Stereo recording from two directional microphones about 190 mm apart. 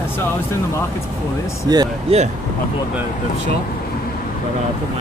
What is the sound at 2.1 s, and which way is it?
Speech, 30° right (ahead or behind).